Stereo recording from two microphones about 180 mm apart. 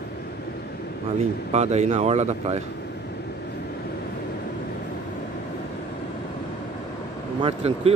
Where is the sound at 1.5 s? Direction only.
40° right (ahead or behind).